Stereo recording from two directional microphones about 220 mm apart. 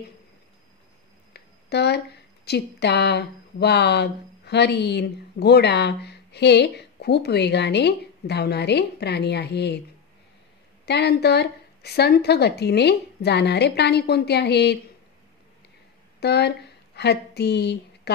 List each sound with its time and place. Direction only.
1.3 s speech: 50° left (ahead or behind)
10.9 s speech: 50° left (ahead or behind)
16.2 s a woman's voice: 50° left (ahead or behind)